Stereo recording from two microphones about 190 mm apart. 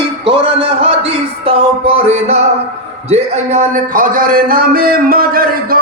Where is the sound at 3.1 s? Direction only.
40° right (ahead or behind).